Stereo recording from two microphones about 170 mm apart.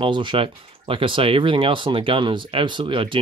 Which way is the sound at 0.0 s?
30° right (ahead or behind).